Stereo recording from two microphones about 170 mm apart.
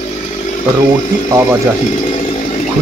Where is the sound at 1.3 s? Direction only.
15° right (ahead or behind).